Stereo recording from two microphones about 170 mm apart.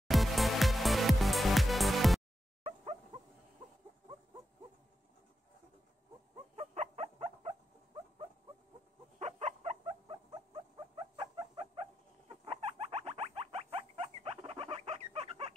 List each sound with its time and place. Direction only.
0.1 s music: centre (ahead or behind)
2.6 s dog: 40° right (ahead or behind)
6.5 s a sound: 40° right (ahead or behind)
9.2 s dog: 40° right (ahead or behind)
11.1 s chicken: 30° right (ahead or behind)
12.4 s rodents: 35° right (ahead or behind)